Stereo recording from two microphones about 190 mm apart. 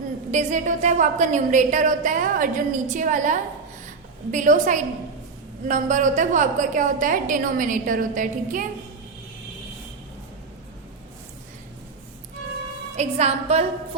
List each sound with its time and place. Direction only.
0.3 s a woman's voice: 40° right (ahead or behind)
13.0 s a woman's voice: 35° right (ahead or behind)